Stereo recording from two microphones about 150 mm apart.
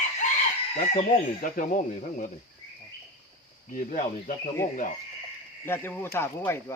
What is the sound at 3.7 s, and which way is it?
Speech, 60° left (ahead or behind).